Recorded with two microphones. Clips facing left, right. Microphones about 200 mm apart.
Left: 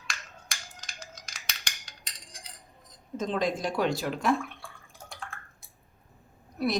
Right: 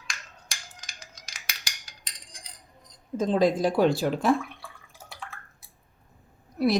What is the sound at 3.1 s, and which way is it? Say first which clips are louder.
Speech: right 6 dB; 35° right (ahead or behind).